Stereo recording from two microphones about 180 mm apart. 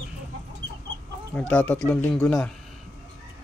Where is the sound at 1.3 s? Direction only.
5° left (ahead or behind).